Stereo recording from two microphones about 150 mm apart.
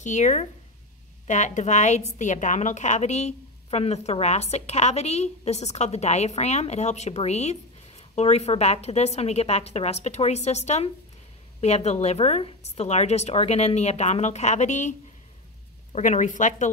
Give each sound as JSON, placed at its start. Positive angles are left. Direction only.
{"t": 0.0, "sound": "a woman's voice", "side_deg": 55}